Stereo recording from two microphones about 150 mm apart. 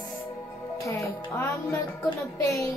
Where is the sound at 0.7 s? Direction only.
20° left (ahead or behind).